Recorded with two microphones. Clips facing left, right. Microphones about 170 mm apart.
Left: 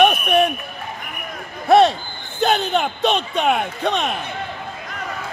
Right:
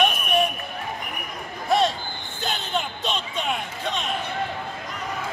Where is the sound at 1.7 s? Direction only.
65° left (ahead or behind).